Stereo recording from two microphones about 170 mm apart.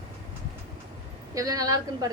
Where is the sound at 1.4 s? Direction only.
20° right (ahead or behind).